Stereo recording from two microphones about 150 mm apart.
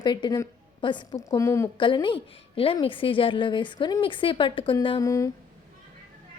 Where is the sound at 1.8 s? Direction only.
30° left (ahead or behind).